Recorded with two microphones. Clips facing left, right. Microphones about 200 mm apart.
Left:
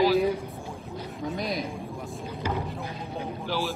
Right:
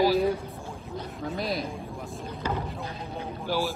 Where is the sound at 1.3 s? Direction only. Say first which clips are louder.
Right 1 dB; centre (ahead or behind).